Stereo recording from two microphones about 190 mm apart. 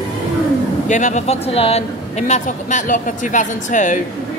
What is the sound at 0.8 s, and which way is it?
Speech, 40° left (ahead or behind).